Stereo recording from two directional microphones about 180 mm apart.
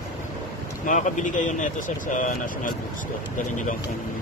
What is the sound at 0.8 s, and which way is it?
Speech, 45° left (ahead or behind).